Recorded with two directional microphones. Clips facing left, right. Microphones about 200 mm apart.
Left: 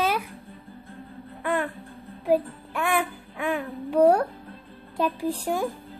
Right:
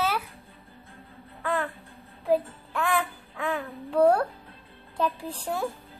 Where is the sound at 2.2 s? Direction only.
15° left (ahead or behind).